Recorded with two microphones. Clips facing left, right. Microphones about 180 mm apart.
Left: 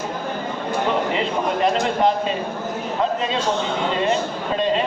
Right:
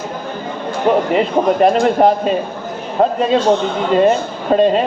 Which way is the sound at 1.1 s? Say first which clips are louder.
Right 8 dB; 50° right (ahead or behind).